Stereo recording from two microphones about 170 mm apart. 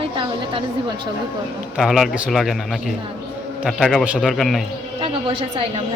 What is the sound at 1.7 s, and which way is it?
Speech, centre (ahead or behind).